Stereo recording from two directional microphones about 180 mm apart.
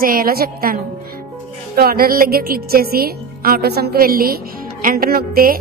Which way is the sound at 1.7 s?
55° right (ahead or behind).